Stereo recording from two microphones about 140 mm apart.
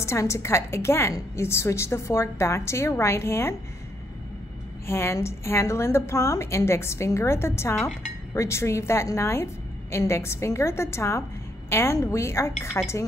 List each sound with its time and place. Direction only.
0.0 s a woman's voice: 20° left (ahead or behind)
4.8 s a woman's voice: 20° left (ahead or behind)